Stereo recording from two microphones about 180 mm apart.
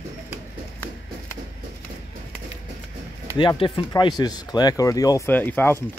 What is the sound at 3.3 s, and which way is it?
Speech, 25° left (ahead or behind).